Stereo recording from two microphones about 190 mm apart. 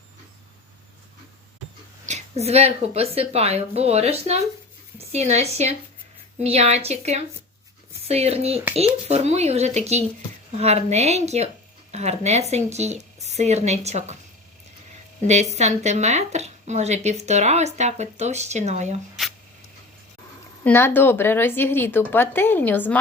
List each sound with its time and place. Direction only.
2.0 s a woman's voice: 35° right (ahead or behind)
15.3 s a woman's voice: 35° right (ahead or behind)
20.7 s a woman's voice: 10° left (ahead or behind)